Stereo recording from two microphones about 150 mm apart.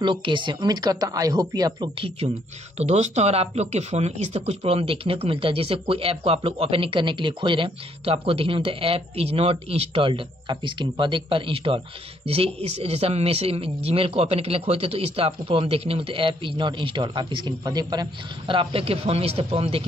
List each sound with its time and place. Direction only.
0.0 s a woman's voice: 35° right (ahead or behind)
18.5 s speech: 35° right (ahead or behind)